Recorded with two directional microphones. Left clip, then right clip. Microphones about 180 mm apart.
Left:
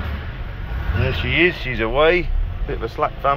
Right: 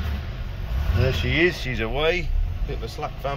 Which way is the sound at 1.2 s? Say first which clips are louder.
Left 5 dB; 25° right (ahead or behind).